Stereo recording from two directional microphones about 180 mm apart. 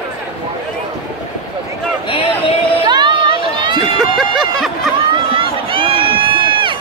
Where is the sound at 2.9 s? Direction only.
25° right (ahead or behind).